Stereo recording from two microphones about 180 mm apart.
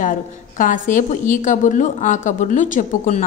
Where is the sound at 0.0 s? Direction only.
50° left (ahead or behind).